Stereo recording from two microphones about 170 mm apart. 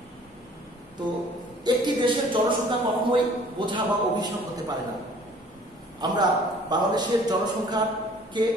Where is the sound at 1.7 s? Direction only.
25° right (ahead or behind).